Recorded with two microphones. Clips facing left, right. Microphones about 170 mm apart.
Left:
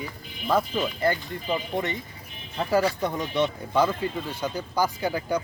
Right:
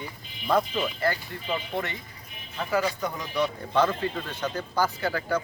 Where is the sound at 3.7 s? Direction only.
10° left (ahead or behind).